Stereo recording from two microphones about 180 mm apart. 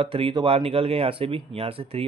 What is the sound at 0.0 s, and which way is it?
A man's voice, 30° right (ahead or behind).